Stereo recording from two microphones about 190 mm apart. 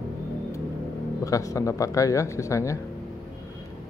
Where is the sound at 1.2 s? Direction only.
15° left (ahead or behind).